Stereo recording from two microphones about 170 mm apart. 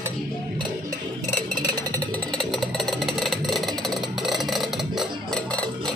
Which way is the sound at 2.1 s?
5° left (ahead or behind).